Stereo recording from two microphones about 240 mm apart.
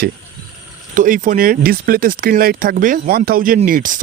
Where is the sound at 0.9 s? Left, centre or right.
Right.